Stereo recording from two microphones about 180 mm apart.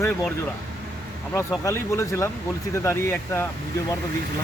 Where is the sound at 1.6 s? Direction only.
15° left (ahead or behind).